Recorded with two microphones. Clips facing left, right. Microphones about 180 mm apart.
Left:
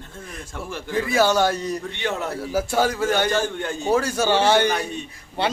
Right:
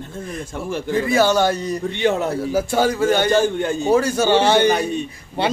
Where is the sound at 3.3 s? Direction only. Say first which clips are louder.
Right 6 dB; 15° right (ahead or behind).